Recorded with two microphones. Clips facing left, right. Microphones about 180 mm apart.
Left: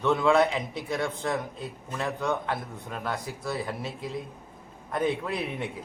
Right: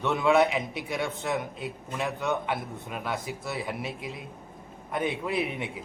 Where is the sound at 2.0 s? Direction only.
5° right (ahead or behind).